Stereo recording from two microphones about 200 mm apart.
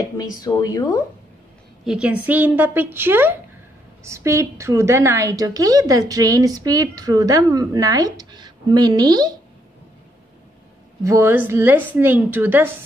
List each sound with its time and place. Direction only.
0.2 s speech: 20° left (ahead or behind)
1.9 s a woman's voice: 5° right (ahead or behind)
11.1 s a woman's voice: 10° right (ahead or behind)